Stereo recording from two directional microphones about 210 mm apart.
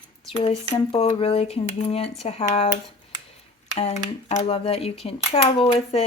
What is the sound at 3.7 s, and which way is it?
Speech, 30° left (ahead or behind).